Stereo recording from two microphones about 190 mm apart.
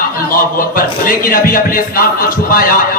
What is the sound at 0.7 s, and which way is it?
A man's voice, 50° left (ahead or behind).